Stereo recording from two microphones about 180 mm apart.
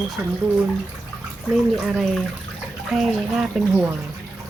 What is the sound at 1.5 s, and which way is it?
Speech, centre (ahead or behind).